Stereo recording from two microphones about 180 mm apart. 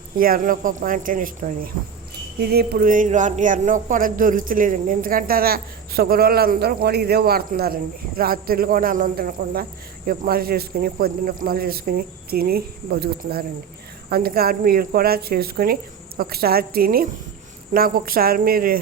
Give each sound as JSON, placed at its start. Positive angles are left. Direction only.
{"t": 0.2, "sound": "speech", "side_deg": -50}
{"t": 2.4, "sound": "speech", "side_deg": -60}